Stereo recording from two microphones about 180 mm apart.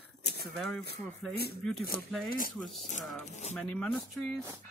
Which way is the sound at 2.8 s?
40° left (ahead or behind).